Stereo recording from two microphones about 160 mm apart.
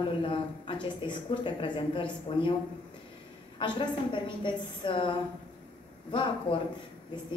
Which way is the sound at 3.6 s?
30° left (ahead or behind).